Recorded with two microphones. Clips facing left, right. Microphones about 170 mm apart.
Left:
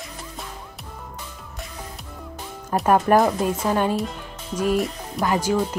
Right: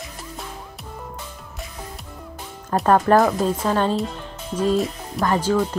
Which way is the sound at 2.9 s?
15° left (ahead or behind).